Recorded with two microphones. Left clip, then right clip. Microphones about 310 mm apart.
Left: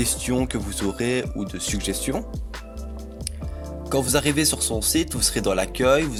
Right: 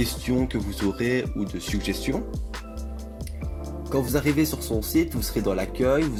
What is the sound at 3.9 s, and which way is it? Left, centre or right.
Speech, left.